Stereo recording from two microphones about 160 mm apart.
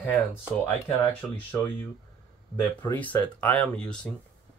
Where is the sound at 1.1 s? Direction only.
10° left (ahead or behind).